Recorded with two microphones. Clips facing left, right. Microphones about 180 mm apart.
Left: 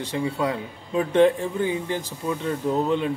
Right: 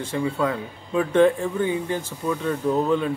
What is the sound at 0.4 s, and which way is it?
Speech, 25° left (ahead or behind).